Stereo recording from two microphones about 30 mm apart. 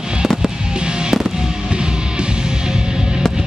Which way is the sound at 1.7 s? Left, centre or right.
Right.